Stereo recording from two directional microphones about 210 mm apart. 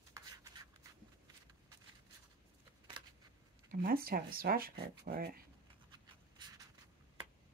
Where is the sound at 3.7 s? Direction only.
45° right (ahead or behind).